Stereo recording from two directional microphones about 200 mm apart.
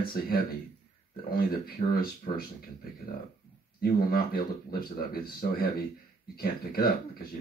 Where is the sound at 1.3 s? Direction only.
45° left (ahead or behind).